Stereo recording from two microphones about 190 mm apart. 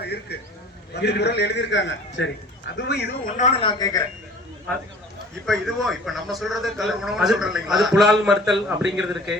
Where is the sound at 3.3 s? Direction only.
35° left (ahead or behind).